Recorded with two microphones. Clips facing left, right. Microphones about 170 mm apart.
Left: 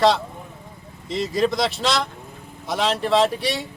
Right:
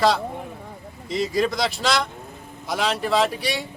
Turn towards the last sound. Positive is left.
turn(degrees=0)  # may be behind; listen again after turning